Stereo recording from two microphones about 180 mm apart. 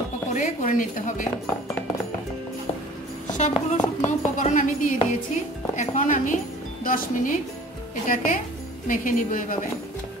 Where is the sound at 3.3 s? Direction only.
40° left (ahead or behind).